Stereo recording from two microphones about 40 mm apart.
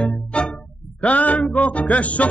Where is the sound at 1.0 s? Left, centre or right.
Left.